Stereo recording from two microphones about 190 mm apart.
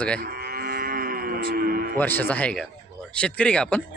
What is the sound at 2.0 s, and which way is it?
A man's voice, 10° left (ahead or behind).